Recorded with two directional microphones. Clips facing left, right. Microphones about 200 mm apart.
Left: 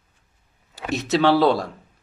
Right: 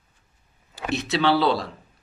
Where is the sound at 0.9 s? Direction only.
45° left (ahead or behind).